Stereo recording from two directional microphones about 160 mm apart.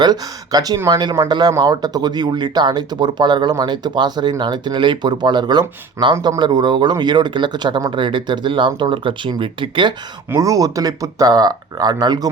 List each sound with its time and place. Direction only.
0.0 s speech: 25° right (ahead or behind)
10.2 s speech: 20° right (ahead or behind)